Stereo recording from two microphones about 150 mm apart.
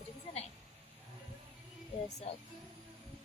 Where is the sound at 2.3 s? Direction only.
45° left (ahead or behind).